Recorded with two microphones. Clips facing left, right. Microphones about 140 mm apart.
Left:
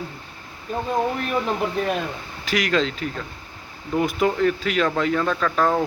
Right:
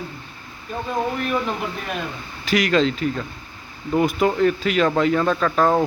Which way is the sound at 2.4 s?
Centre (ahead or behind).